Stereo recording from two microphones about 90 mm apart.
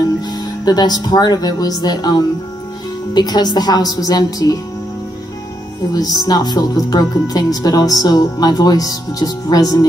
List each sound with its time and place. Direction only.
0.7 s speech: 50° left (ahead or behind)
5.9 s speech: 45° left (ahead or behind)